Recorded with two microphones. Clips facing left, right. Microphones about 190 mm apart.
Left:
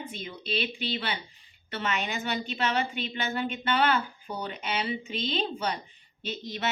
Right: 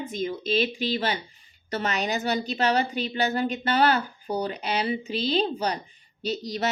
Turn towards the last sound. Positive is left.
turn(degrees=-40)  # may be behind; listen again after turning